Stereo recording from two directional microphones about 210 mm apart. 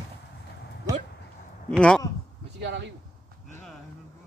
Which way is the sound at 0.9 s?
15° right (ahead or behind).